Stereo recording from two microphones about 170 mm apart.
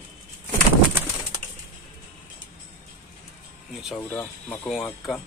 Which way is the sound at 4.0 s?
10° left (ahead or behind).